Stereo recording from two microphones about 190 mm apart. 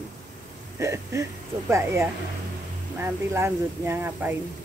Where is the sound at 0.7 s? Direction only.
15° right (ahead or behind).